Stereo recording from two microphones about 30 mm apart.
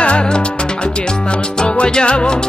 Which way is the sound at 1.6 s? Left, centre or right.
Left.